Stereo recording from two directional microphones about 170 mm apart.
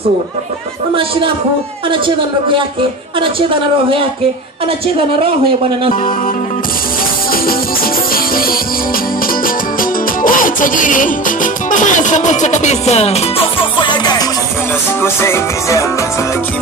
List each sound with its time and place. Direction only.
1.9 s a woman's voice: 30° right (ahead or behind)
7.4 s music: 60° left (ahead or behind)
9.8 s music: 55° left (ahead or behind)
13.8 s music: 25° left (ahead or behind)
15.0 s music: 15° left (ahead or behind)